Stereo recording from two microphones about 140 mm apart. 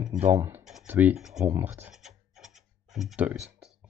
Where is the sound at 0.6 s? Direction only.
5° right (ahead or behind).